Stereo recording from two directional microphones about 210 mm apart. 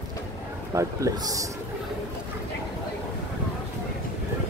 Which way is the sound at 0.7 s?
15° right (ahead or behind).